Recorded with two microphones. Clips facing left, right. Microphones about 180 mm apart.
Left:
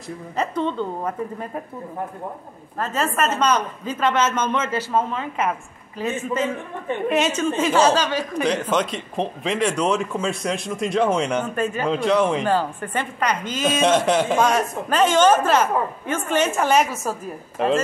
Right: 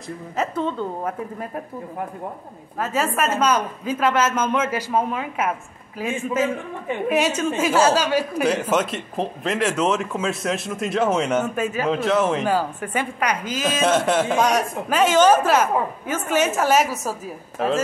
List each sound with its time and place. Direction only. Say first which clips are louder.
0.4 s a woman's voice: left 1 dB; 5° right (ahead or behind)
2.8 s a woman's voice: even; 10° right (ahead or behind)